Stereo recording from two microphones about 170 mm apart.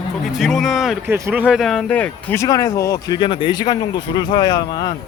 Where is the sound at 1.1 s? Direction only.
10° right (ahead or behind); by 4.9 s 25° left (ahead or behind).